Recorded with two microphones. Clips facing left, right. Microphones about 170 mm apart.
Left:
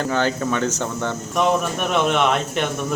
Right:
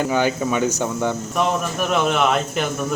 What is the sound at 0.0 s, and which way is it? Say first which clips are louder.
Speech: right 2 dB; 10° right (ahead or behind).